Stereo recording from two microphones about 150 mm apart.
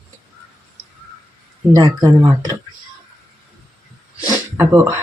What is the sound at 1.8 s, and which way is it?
Speech, 25° right (ahead or behind).